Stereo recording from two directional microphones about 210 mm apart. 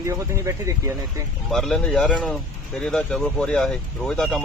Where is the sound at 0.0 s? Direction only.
15° right (ahead or behind).